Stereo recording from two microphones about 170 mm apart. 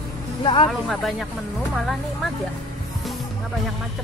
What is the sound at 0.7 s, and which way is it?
Speech, centre (ahead or behind).